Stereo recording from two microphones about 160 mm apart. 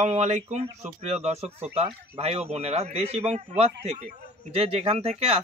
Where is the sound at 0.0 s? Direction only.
45° right (ahead or behind).